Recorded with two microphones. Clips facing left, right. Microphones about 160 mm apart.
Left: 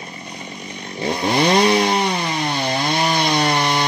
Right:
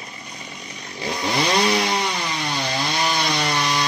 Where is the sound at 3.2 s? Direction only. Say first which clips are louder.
Left 5 dB; 60° left (ahead or behind).